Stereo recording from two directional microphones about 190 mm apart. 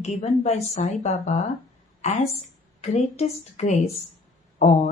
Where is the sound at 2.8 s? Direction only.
35° left (ahead or behind).